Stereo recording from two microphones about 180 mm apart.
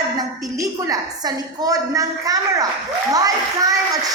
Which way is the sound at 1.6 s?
20° right (ahead or behind).